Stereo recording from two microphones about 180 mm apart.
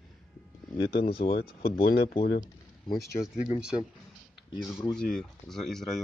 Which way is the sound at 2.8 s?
20° left (ahead or behind).